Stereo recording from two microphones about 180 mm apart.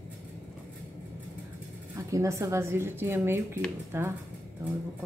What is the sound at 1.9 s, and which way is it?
Speech, 15° right (ahead or behind).